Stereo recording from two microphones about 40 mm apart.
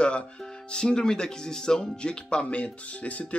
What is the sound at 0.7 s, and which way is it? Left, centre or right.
Speech, left.